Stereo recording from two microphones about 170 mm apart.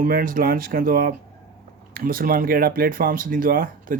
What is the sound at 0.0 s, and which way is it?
Speech, 55° right (ahead or behind).